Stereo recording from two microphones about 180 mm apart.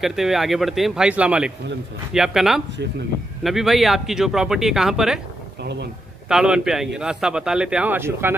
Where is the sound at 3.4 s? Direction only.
Centre (ahead or behind).